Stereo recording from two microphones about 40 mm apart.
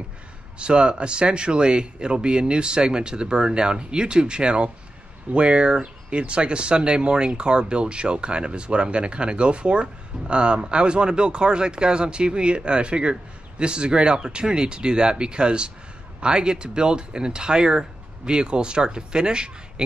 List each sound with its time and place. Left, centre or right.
0.6 s speech: right